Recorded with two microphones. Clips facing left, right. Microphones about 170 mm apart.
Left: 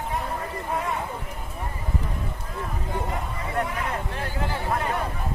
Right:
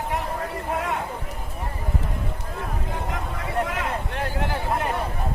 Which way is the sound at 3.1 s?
90° right.